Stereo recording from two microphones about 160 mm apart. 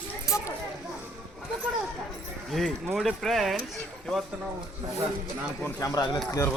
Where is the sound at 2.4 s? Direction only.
Centre (ahead or behind).